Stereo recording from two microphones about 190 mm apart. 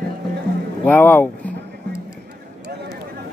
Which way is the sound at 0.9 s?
10° left (ahead or behind).